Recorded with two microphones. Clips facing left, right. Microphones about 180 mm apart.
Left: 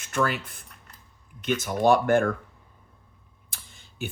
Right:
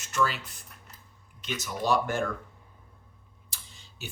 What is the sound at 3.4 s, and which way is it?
Tick-tock, 55° left (ahead or behind).